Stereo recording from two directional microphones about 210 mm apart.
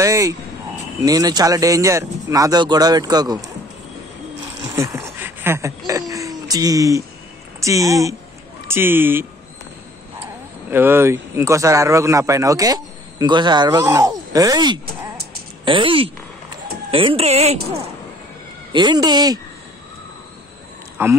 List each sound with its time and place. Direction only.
0.0 s speech: 15° right (ahead or behind)
4.7 s a sound: 10° right (ahead or behind)
7.6 s speech: 15° right (ahead or behind)
10.7 s speech: 10° right (ahead or behind)
21.0 s speech: 10° right (ahead or behind)